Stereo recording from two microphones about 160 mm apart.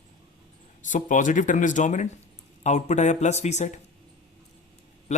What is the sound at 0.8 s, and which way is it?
Speech, 50° left (ahead or behind).